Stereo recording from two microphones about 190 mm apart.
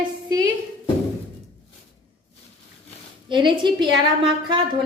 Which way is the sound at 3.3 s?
25° right (ahead or behind).